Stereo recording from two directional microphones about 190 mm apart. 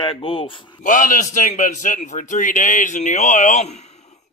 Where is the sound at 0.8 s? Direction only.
45° left (ahead or behind).